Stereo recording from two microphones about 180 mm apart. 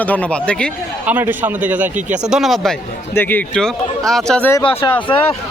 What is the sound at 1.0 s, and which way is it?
A man's voice, 10° right (ahead or behind).